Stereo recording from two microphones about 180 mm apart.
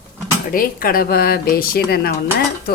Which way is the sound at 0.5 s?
55° left (ahead or behind).